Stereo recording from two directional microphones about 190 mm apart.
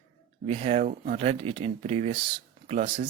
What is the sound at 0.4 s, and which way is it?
Speech, 35° right (ahead or behind).